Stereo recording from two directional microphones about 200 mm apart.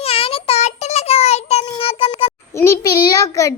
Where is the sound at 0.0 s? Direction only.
30° left (ahead or behind).